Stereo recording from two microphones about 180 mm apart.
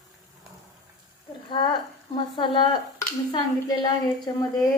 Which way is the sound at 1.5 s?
25° left (ahead or behind).